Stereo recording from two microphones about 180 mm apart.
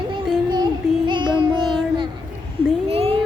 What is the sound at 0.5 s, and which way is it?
Music, 25° right (ahead or behind).